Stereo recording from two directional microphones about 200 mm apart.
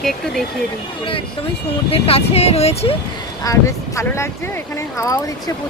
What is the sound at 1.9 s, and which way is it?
Speech, 30° left (ahead or behind).